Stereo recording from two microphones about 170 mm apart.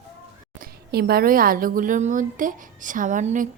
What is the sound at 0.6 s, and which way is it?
A woman's voice, 65° right (ahead or behind).